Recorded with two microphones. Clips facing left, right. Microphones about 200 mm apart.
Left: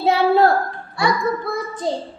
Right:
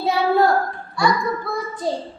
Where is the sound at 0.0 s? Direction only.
25° left (ahead or behind).